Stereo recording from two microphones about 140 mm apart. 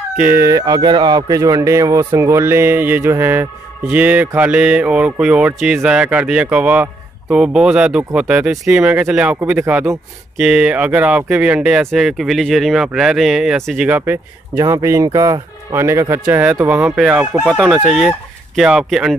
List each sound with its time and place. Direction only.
0.2 s speech: 15° right (ahead or behind)
13.8 s speech: 15° right (ahead or behind)